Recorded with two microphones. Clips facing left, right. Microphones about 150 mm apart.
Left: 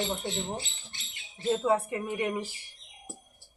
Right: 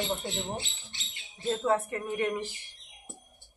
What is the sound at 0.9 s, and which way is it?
Speech, 50° left (ahead or behind).